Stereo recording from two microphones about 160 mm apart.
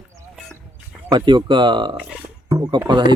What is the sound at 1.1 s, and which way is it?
Speech, 30° right (ahead or behind).